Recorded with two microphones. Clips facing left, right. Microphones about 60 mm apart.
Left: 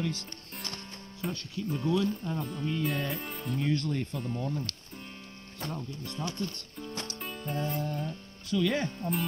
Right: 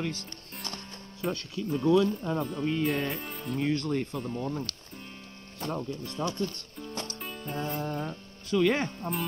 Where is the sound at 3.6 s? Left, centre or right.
Centre.